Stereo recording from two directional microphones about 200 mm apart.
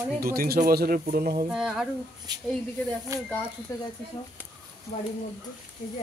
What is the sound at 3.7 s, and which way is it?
Speech, 15° left (ahead or behind).